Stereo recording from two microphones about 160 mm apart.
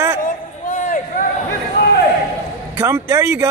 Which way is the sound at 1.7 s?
90° left.